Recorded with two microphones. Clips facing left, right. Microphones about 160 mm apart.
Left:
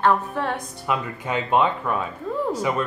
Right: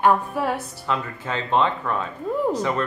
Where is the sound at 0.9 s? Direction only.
10° left (ahead or behind).